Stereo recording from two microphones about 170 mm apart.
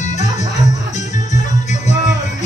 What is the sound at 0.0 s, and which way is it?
Music, 45° left (ahead or behind).